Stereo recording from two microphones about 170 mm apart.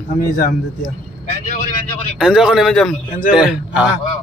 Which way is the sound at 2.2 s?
5° right (ahead or behind).